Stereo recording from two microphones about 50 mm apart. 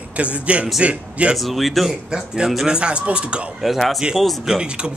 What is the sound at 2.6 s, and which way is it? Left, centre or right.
Speech, centre.